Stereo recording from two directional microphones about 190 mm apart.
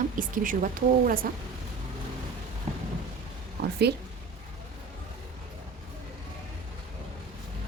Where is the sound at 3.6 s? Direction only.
60° right (ahead or behind).